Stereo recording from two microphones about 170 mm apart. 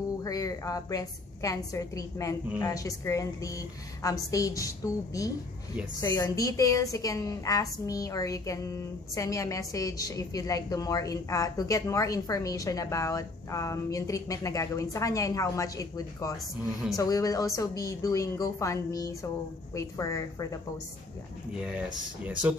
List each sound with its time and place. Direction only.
0.2 s a woman's voice: 20° left (ahead or behind)
21.5 s speech: 10° right (ahead or behind)